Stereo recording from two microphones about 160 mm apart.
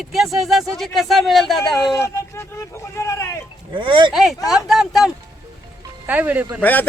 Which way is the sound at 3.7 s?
30° right (ahead or behind).